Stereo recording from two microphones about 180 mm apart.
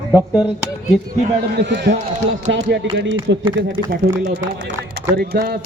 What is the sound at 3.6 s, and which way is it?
Speech, 65° right (ahead or behind).